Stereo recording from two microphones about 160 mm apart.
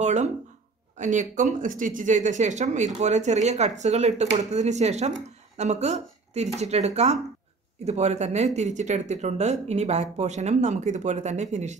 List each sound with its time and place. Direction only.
0.0 s speech: 45° right (ahead or behind)